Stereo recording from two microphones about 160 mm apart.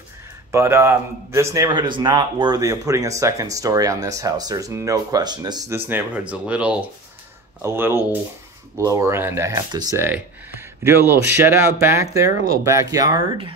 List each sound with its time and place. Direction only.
0.5 s a man's voice: 15° right (ahead or behind)
5.9 s a man's voice: 10° right (ahead or behind)